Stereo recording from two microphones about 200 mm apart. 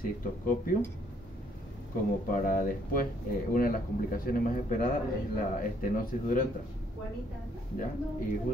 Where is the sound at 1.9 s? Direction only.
45° left (ahead or behind).